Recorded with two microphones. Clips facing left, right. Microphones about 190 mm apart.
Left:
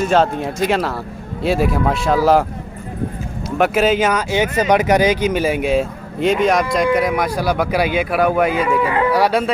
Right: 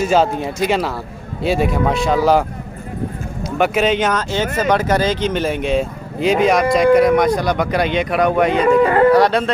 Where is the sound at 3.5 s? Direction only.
Centre (ahead or behind).